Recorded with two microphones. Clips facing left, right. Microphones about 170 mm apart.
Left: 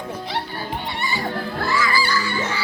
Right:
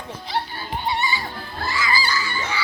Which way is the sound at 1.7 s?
65° left (ahead or behind).